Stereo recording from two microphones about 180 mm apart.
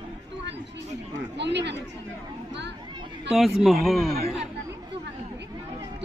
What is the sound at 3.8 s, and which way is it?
Speech, centre (ahead or behind).